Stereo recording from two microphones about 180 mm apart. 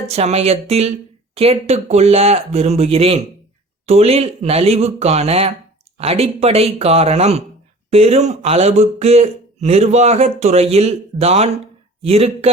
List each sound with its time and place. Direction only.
0.1 s speech: 35° right (ahead or behind)